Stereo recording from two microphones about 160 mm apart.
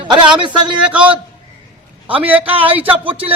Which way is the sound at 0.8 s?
10° right (ahead or behind).